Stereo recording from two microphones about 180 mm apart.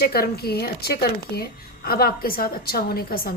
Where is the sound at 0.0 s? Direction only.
60° left (ahead or behind).